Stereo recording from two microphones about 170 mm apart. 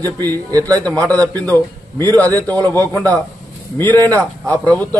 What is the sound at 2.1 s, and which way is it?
Speech, 10° left (ahead or behind).